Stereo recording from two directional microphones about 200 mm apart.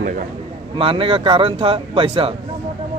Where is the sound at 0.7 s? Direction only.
25° right (ahead or behind).